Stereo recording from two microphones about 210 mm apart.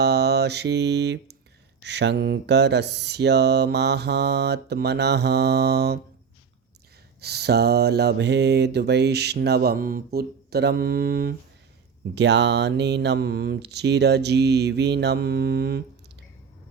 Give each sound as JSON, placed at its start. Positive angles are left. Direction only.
{"t": 0.0, "sound": "mantra", "side_deg": -55}
{"t": 1.8, "sound": "speech", "side_deg": -55}
{"t": 7.2, "sound": "speech", "side_deg": -50}